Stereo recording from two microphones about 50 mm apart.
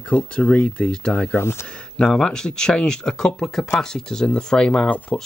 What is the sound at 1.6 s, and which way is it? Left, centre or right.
Speech, centre.